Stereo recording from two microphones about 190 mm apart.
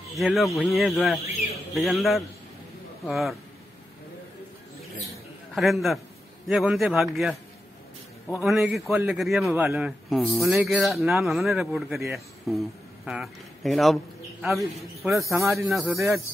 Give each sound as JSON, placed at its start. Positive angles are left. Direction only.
{"t": 0.1, "sound": "speech", "side_deg": 0}
{"t": 5.5, "sound": "a man's voice", "side_deg": 0}
{"t": 8.4, "sound": "speech", "side_deg": 0}
{"t": 15.0, "sound": "speech", "side_deg": -15}
{"t": 15.7, "sound": "speech", "side_deg": 0}